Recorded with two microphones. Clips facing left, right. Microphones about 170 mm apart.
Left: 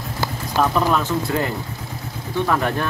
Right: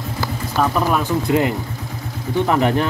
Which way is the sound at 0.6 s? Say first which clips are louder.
Even; 5° right (ahead or behind).